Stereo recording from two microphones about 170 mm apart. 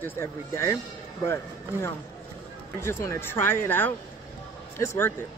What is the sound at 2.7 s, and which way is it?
Speech, 15° left (ahead or behind).